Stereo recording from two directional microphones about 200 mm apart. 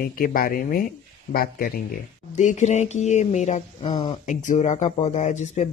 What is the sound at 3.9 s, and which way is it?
Speech, 20° left (ahead or behind).